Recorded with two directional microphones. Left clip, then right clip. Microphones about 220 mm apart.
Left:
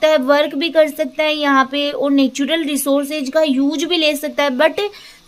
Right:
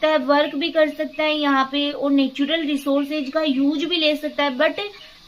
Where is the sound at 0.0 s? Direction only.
45° left (ahead or behind).